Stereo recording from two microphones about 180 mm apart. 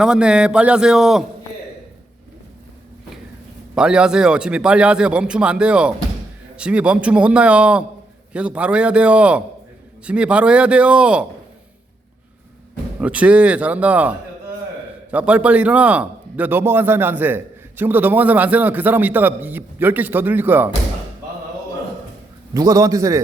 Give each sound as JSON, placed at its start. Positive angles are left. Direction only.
{"t": 0.0, "sound": "a man's voice", "side_deg": -5}
{"t": 3.8, "sound": "a man's voice", "side_deg": -5}
{"t": 13.0, "sound": "a man's voice", "side_deg": -5}
{"t": 22.5, "sound": "a man's voice", "side_deg": -20}